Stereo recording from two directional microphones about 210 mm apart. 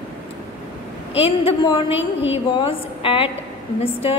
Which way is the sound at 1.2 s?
25° left (ahead or behind).